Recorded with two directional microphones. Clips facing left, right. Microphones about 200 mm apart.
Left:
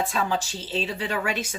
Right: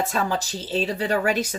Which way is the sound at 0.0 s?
45° right (ahead or behind).